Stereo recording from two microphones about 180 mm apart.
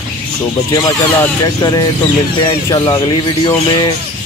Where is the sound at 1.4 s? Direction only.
20° left (ahead or behind).